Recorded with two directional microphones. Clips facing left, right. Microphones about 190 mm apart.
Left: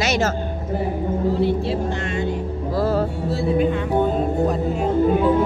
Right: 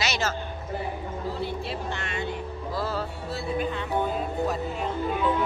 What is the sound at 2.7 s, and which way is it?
Music, 50° left (ahead or behind).